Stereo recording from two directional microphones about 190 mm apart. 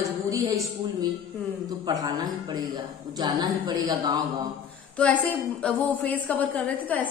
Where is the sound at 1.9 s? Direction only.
20° right (ahead or behind).